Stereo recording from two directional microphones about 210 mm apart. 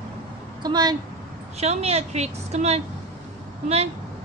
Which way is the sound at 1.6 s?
30° right (ahead or behind).